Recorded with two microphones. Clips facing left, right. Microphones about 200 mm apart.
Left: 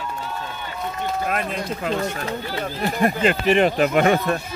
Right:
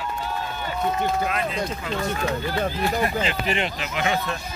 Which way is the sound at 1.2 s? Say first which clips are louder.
Even; 50° left (ahead or behind).